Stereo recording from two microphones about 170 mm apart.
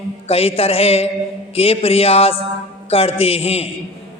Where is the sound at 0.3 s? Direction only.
35° left (ahead or behind).